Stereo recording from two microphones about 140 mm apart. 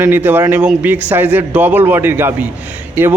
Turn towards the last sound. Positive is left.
turn(degrees=-15)  # may be behind; listen again after turning